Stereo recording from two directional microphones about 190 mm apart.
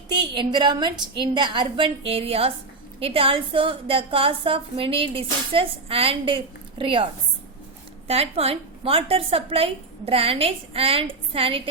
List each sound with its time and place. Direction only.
0.1 s a woman's voice: 25° right (ahead or behind)